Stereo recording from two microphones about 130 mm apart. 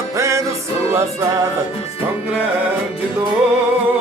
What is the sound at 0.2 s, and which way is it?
Music, 20° right (ahead or behind).